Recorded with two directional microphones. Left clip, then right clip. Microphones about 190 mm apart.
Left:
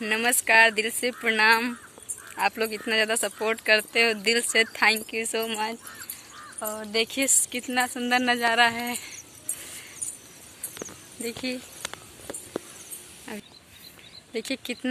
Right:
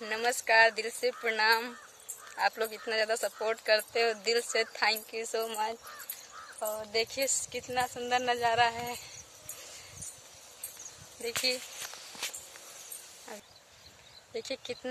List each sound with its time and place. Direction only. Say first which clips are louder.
0.0 s speech: left 7 dB; 5° right (ahead or behind)
6.6 s speech: left 5 dB; centre (ahead or behind)
13.3 s speech: left 8 dB; centre (ahead or behind)